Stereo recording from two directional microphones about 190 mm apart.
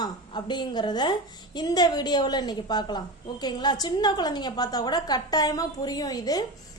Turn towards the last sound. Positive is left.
turn(degrees=20)  # may be behind; listen again after turning